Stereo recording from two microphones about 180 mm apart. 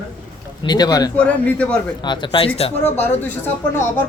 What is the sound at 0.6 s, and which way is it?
Speech, 25° left (ahead or behind).